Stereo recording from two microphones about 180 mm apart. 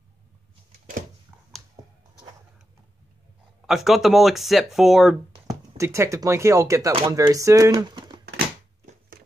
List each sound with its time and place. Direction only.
3.6 s speech: centre (ahead or behind)
5.8 s speech: 15° right (ahead or behind)